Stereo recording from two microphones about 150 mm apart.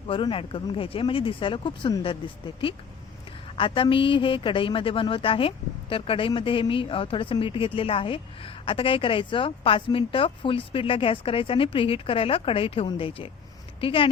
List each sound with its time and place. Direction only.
0.1 s a woman's voice: 35° left (ahead or behind)